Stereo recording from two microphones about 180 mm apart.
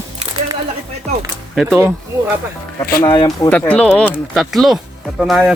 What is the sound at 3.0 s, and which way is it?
Speech, 25° left (ahead or behind).